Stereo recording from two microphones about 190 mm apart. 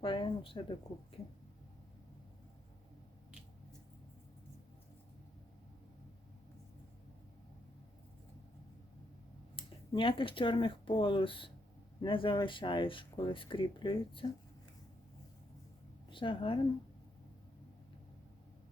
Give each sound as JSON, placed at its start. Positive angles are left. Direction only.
{"t": 0.0, "sound": "speech", "side_deg": 25}
{"t": 9.6, "sound": "speech", "side_deg": 30}
{"t": 16.0, "sound": "a woman's voice", "side_deg": 25}